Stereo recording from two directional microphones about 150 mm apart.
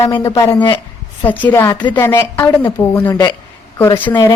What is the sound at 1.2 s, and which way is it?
A woman's voice, 10° left (ahead or behind).